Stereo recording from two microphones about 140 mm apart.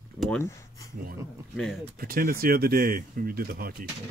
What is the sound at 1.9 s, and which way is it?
Speech, 90° right.